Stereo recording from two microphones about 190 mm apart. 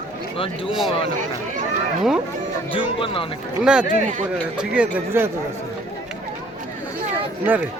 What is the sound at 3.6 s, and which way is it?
Speech, 5° right (ahead or behind).